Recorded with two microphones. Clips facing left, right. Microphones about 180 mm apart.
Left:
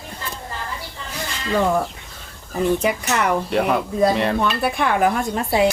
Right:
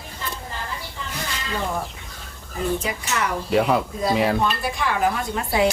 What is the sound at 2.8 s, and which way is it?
Speech, 60° left (ahead or behind).